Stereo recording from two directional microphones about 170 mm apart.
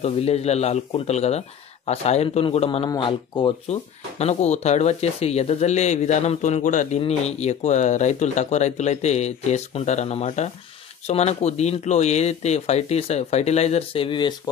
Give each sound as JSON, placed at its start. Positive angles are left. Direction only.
{"t": 0.0, "sound": "speech", "side_deg": 40}
{"t": 4.2, "sound": "speech", "side_deg": 40}